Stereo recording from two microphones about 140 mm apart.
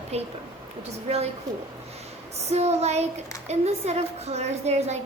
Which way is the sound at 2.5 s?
50° right (ahead or behind).